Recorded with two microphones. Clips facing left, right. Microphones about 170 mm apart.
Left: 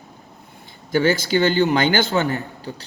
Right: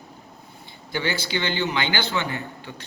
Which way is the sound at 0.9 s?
45° left (ahead or behind).